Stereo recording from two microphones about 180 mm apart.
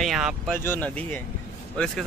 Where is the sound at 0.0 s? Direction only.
Centre (ahead or behind).